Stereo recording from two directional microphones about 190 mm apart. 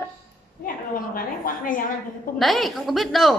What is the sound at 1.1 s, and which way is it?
Speech, 45° left (ahead or behind).